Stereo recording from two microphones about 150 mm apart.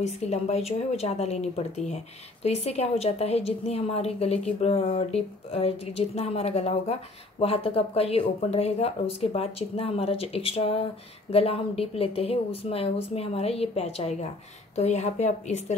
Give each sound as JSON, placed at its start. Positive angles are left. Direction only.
{"t": 0.0, "sound": "a woman's voice", "side_deg": 45}